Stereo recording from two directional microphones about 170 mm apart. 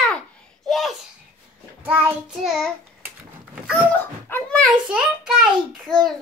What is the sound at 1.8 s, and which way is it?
Child singing, 10° right (ahead or behind).